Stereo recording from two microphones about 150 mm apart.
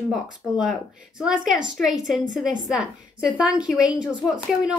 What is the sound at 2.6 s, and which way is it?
A woman's voice, centre (ahead or behind).